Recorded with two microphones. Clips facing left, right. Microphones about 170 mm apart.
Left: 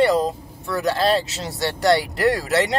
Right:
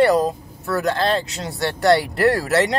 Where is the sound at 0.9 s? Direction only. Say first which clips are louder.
Left 1 dB; centre (ahead or behind).